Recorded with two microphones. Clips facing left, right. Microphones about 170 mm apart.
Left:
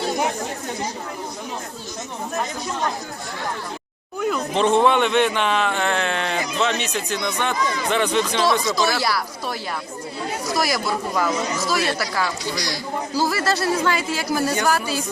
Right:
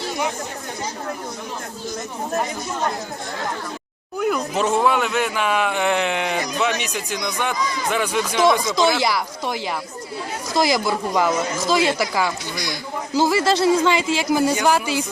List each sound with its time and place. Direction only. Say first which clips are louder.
4.2 s speech: even; 5° right (ahead or behind)